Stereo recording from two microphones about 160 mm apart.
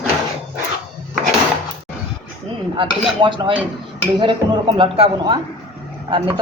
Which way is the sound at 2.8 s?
30° right (ahead or behind).